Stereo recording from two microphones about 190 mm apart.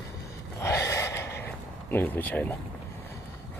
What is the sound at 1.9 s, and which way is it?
Speech, 10° left (ahead or behind).